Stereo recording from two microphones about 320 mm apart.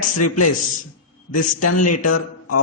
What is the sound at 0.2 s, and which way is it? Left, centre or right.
Speech, left.